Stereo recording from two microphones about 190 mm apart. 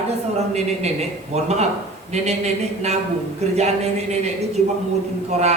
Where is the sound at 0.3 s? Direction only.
35° right (ahead or behind).